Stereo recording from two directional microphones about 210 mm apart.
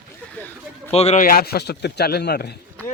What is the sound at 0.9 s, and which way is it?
Speech, 30° left (ahead or behind).